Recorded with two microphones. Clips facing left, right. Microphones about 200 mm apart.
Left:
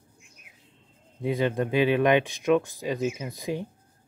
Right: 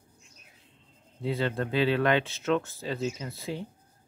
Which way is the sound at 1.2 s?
15° left (ahead or behind).